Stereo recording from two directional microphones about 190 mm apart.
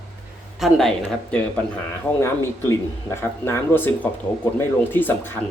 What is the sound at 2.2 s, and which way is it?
Speech, 15° left (ahead or behind).